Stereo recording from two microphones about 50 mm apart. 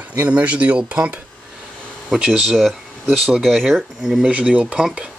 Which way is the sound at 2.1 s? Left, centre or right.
Centre.